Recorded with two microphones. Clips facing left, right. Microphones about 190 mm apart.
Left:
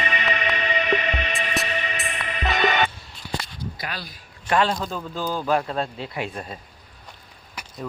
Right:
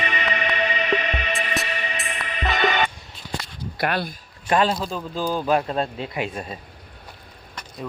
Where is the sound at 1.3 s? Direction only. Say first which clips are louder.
Even; centre (ahead or behind).